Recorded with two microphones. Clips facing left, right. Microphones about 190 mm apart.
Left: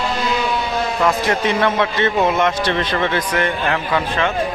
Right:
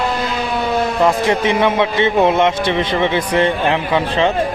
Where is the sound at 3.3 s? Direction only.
30° right (ahead or behind).